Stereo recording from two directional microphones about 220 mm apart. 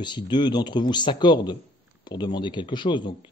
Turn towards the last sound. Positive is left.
turn(degrees=20)  # may be behind; listen again after turning